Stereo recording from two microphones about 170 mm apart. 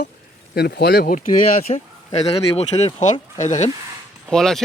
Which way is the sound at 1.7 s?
35° left (ahead or behind).